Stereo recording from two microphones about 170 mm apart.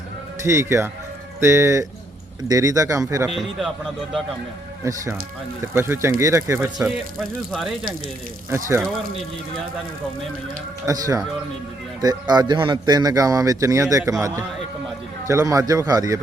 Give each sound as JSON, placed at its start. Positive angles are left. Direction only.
{"t": 0.4, "sound": "a man's voice", "side_deg": -15}
{"t": 3.2, "sound": "speech", "side_deg": 0}
{"t": 5.7, "sound": "speech", "side_deg": -15}
{"t": 6.8, "sound": "speech", "side_deg": 0}
{"t": 8.4, "sound": "speech", "side_deg": -15}
{"t": 10.8, "sound": "a man's voice", "side_deg": -20}